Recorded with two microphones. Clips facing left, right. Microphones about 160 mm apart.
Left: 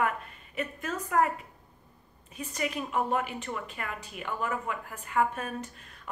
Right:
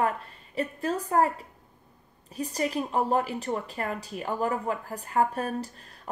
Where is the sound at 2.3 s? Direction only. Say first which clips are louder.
Right 5 dB; 35° right (ahead or behind).